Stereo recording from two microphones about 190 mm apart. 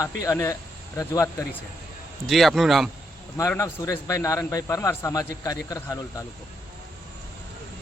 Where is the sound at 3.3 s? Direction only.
15° left (ahead or behind).